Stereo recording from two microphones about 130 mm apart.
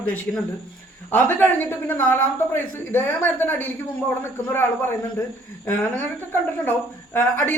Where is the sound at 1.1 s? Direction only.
15° left (ahead or behind).